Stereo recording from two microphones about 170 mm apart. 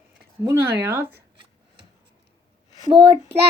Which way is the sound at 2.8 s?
25° right (ahead or behind).